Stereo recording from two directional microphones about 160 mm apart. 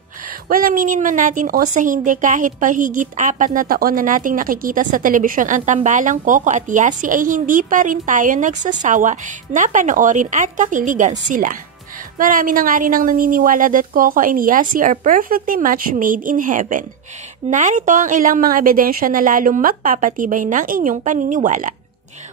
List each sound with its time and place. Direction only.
0.5 s a woman's voice: 60° right (ahead or behind)